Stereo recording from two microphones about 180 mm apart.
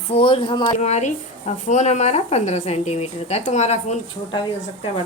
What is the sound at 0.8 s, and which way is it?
Speech, 40° left (ahead or behind).